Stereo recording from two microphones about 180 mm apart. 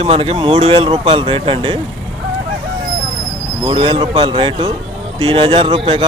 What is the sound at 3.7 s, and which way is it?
Speech, 30° right (ahead or behind).